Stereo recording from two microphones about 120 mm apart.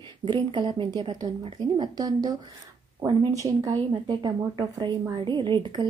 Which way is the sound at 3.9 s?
40° right (ahead or behind).